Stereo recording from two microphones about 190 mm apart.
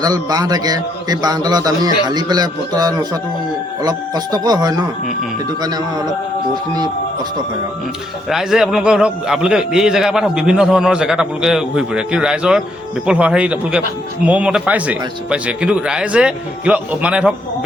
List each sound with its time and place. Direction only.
0.0 s a man's voice: 20° right (ahead or behind)
8.3 s a man's voice: centre (ahead or behind)